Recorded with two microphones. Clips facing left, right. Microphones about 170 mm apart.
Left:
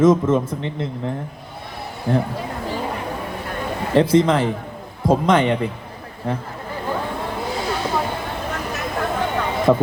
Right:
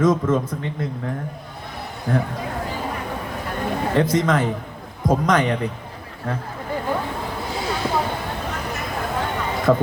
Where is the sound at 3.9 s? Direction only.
30° left (ahead or behind).